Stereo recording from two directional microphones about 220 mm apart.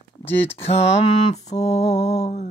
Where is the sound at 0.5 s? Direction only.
25° left (ahead or behind).